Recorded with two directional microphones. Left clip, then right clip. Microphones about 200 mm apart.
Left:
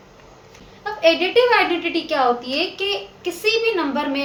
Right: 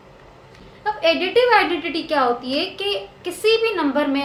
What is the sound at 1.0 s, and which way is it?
A woman's voice, 25° right (ahead or behind).